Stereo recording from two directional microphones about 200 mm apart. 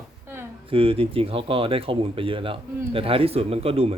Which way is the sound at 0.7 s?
25° right (ahead or behind).